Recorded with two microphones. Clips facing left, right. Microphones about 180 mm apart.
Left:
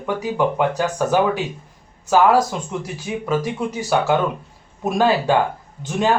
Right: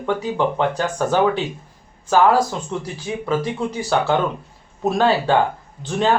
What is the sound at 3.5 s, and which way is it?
Speech, 10° left (ahead or behind).